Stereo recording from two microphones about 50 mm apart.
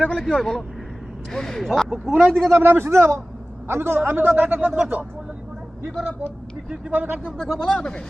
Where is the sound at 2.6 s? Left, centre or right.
Right.